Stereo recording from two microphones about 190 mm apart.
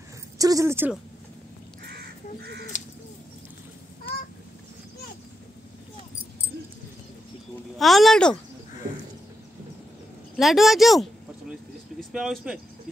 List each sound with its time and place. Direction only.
0.4 s speech: 15° right (ahead or behind)
2.7 s crow: 40° left (ahead or behind)
7.8 s speech: centre (ahead or behind)
10.3 s speech: centre (ahead or behind)